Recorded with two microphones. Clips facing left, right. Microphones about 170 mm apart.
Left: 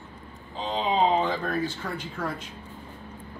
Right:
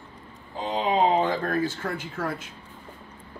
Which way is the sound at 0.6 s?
10° right (ahead or behind).